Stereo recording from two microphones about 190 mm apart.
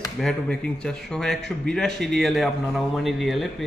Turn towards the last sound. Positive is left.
turn(degrees=0)  # may be behind; listen again after turning